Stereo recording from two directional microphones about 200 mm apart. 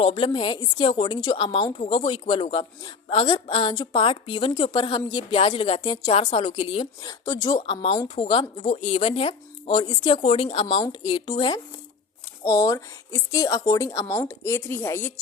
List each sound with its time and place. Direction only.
0.0 s a woman's voice: 25° left (ahead or behind)
7.0 s a woman's voice: 15° left (ahead or behind)